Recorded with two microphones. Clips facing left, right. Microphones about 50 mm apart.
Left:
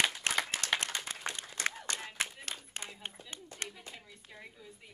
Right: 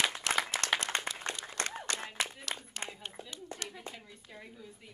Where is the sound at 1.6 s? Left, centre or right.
Right.